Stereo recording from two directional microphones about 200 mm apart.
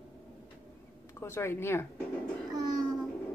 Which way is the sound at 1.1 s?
15° left (ahead or behind).